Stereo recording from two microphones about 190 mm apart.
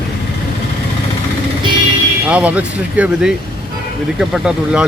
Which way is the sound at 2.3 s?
5° right (ahead or behind).